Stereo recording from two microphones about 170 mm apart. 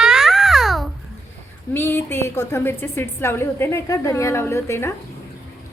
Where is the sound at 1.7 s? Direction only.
15° left (ahead or behind).